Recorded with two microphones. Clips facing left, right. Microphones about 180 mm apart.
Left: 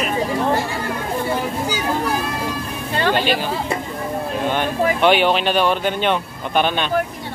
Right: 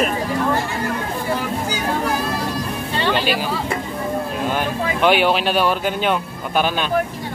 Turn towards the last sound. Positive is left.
turn(degrees=-5)  # may be behind; listen again after turning